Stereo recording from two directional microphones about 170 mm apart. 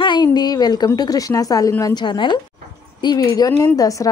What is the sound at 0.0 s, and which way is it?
A woman's voice, 25° left (ahead or behind).